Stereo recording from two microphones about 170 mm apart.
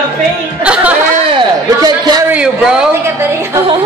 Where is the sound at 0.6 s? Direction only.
5° right (ahead or behind).